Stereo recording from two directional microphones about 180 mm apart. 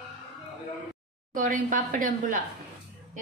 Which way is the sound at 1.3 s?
45° right (ahead or behind).